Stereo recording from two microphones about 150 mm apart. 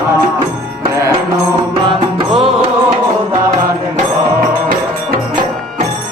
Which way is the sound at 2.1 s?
40° right (ahead or behind).